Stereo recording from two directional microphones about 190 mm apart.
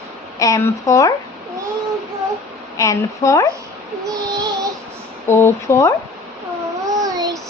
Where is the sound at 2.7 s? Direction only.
15° left (ahead or behind).